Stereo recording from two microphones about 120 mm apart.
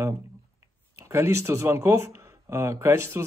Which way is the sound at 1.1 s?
20° right (ahead or behind).